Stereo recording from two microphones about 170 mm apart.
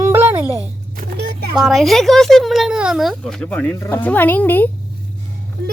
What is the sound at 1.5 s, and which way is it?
Speech, centre (ahead or behind).